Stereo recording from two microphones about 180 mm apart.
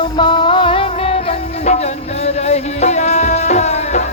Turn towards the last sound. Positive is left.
turn(degrees=40)  # may be behind; listen again after turning